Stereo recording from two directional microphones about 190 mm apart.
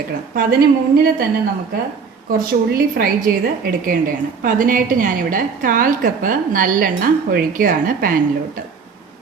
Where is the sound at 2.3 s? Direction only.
50° right (ahead or behind).